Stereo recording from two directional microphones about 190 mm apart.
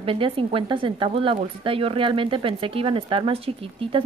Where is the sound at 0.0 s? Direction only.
30° right (ahead or behind).